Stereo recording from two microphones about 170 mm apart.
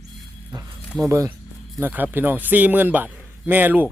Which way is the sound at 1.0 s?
20° right (ahead or behind).